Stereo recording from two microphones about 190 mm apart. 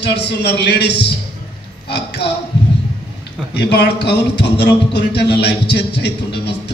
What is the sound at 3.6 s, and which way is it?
A man's voice, 60° left (ahead or behind).